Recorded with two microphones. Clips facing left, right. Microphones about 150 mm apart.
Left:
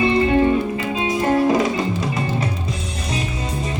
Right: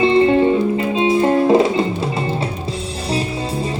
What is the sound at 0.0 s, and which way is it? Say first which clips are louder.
Music: right 3 dB; 25° right (ahead or behind).